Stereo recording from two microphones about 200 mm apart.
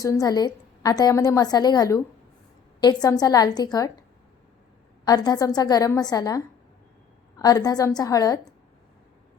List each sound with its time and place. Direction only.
0.0 s a woman's voice: 15° left (ahead or behind)
5.0 s a woman's voice: 20° left (ahead or behind)